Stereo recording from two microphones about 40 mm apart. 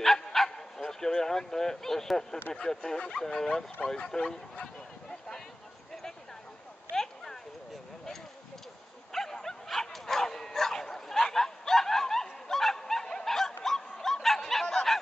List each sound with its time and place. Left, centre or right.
0.0 s bow-wow: centre
2.5 s speech: centre
9.1 s bow-wow: centre
11.3 s snicker: centre
13.7 s honk: centre